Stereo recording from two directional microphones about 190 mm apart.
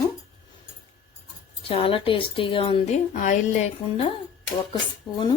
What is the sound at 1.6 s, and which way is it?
A woman's voice, 30° left (ahead or behind).